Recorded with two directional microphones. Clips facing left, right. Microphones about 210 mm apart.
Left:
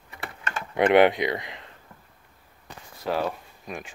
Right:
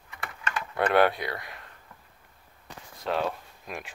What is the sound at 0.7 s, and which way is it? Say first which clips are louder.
Speech: left 5 dB; 20° left (ahead or behind).